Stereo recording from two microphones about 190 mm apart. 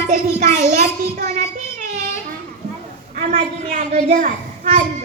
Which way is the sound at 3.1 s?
40° right (ahead or behind).